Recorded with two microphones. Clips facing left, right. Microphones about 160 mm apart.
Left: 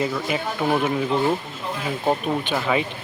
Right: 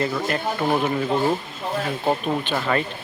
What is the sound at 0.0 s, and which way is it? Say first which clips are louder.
Speech: right 1 dB; 5° left (ahead or behind).